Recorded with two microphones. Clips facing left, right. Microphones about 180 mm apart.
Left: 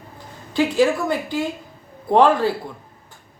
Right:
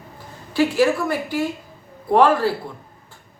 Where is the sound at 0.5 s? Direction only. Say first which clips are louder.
Even; 20° left (ahead or behind).